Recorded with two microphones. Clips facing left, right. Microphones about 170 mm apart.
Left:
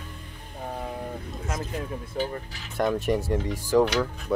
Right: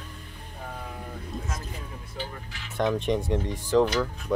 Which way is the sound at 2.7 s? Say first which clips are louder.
Left 1 dB; 5° left (ahead or behind).